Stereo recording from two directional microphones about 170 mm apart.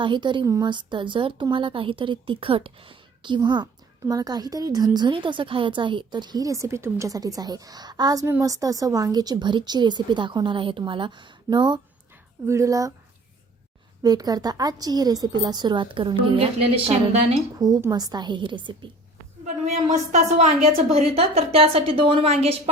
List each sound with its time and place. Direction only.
0.0 s a woman's voice: 30° right (ahead or behind)
14.0 s a woman's voice: 20° right (ahead or behind); by 17.3 s 35° right (ahead or behind)
17.6 s a woman's voice: 20° right (ahead or behind)
19.6 s a woman's voice: 40° right (ahead or behind)